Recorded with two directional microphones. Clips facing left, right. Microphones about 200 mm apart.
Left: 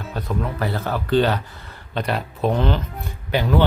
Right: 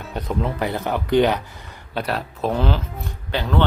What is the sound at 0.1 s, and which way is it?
Speech, 20° right (ahead or behind).